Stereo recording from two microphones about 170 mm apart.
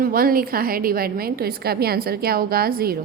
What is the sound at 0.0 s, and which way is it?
A woman's voice, 60° right (ahead or behind).